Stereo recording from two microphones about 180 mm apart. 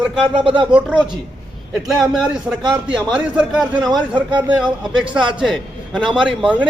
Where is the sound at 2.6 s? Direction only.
25° right (ahead or behind).